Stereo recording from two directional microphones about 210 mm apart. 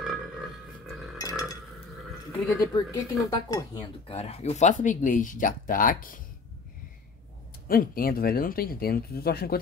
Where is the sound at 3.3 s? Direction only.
20° left (ahead or behind); by 6.1 s 40° left (ahead or behind).